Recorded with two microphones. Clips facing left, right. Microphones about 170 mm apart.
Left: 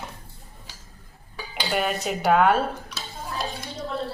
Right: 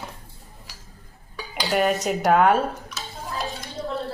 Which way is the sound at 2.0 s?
Centre (ahead or behind).